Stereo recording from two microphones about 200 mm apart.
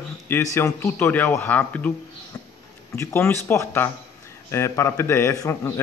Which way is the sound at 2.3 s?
20° left (ahead or behind).